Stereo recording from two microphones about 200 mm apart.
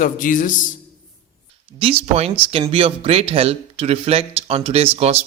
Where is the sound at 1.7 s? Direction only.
30° right (ahead or behind).